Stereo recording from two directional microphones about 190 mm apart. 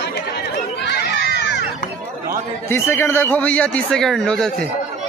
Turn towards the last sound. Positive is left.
turn(degrees=5)  # may be behind; listen again after turning